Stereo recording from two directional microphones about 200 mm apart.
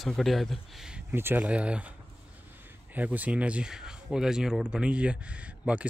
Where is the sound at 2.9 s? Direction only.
10° right (ahead or behind).